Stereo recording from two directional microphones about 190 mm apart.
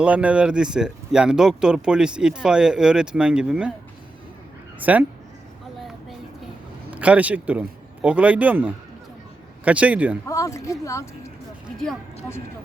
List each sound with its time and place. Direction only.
0.0 s speech: 5° right (ahead or behind)
4.8 s a man's voice: 10° right (ahead or behind)
6.9 s a man's voice: 5° right (ahead or behind)
10.2 s speech: 15° left (ahead or behind)